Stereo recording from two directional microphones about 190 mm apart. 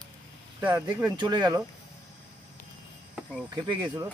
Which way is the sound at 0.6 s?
10° right (ahead or behind).